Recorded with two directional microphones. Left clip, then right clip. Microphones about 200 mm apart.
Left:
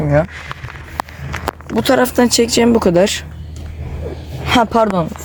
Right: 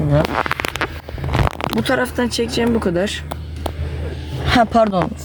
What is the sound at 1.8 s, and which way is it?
Speech, 55° left (ahead or behind).